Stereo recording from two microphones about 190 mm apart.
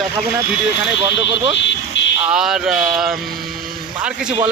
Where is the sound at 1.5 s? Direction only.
75° left (ahead or behind).